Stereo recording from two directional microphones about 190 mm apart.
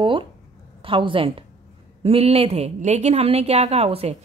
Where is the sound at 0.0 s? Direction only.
25° right (ahead or behind).